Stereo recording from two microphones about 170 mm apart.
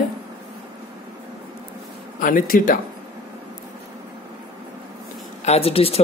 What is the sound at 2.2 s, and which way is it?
Speech, 55° left (ahead or behind).